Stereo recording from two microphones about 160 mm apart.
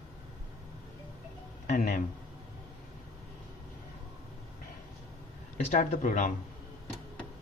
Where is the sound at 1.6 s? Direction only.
50° left (ahead or behind).